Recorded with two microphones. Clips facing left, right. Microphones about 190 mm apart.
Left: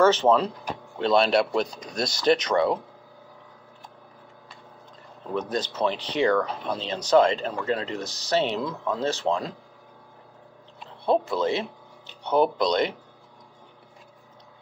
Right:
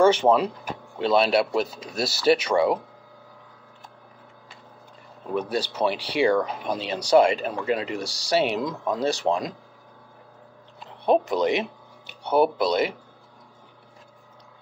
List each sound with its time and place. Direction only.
0.0 s speech: 10° right (ahead or behind)
5.3 s speech: 10° right (ahead or behind)
10.9 s speech: 15° right (ahead or behind)